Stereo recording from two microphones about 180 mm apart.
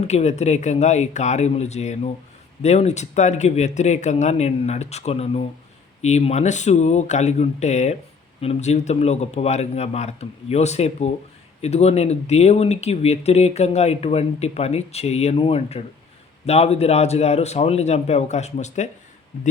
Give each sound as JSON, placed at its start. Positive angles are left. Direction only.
{"t": 0.1, "sound": "speech", "side_deg": 40}